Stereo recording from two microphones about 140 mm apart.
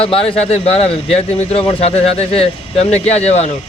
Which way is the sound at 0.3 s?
45° left (ahead or behind).